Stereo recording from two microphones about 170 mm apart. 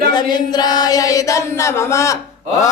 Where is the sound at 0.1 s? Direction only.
25° left (ahead or behind).